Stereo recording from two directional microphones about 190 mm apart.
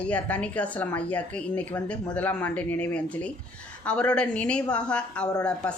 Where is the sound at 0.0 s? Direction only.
5° left (ahead or behind).